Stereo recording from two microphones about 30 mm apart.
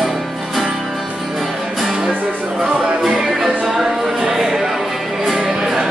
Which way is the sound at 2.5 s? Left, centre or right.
Right.